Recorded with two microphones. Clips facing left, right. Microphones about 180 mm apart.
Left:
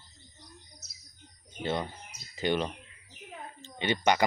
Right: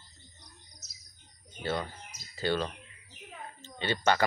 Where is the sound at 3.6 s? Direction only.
15° left (ahead or behind).